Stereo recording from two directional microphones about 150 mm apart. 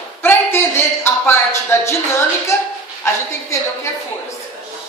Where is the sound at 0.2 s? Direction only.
15° left (ahead or behind).